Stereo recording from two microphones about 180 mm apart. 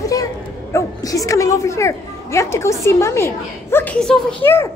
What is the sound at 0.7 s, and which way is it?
A woman's voice, 20° left (ahead or behind).